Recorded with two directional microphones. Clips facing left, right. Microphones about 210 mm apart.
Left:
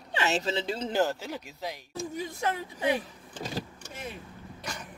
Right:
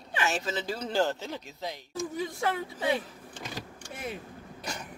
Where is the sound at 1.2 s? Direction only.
10° left (ahead or behind).